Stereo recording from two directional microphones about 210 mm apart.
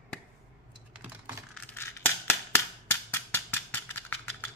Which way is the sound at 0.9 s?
10° right (ahead or behind).